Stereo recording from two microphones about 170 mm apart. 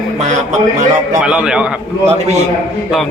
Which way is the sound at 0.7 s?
45° right (ahead or behind).